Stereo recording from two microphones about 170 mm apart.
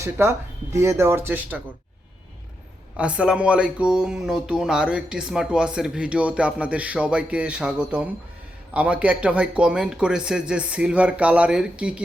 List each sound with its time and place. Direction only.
0.0 s speech: 15° right (ahead or behind)
3.0 s speech: 5° right (ahead or behind)